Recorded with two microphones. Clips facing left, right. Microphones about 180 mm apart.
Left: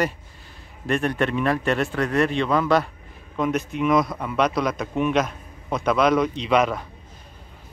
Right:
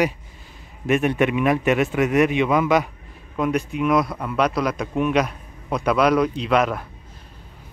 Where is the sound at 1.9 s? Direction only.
15° right (ahead or behind).